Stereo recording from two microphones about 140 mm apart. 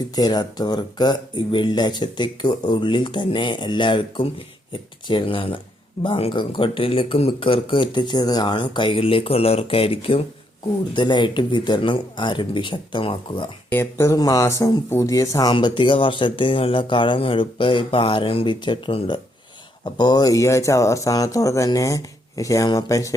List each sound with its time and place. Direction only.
0.2 s speech: 30° left (ahead or behind)
13.7 s speech: 15° left (ahead or behind)
15.5 s speech: 35° left (ahead or behind)